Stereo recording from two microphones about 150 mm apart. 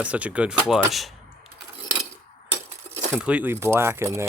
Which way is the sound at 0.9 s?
Centre (ahead or behind).